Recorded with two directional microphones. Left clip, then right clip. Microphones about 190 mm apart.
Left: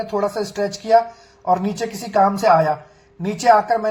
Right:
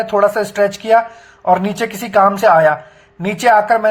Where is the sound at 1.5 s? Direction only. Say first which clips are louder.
Right 5 dB; 25° right (ahead or behind).